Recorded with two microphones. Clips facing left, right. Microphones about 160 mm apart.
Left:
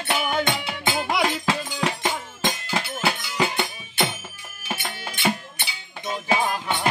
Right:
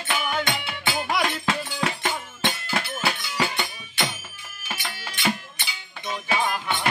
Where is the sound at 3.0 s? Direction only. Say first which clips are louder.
Left 4 dB; 25° left (ahead or behind).